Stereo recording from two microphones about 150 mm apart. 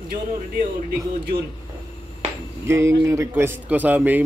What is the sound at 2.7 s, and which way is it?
A man's voice, 20° right (ahead or behind).